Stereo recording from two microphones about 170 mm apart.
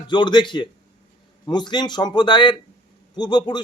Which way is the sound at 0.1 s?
25° left (ahead or behind).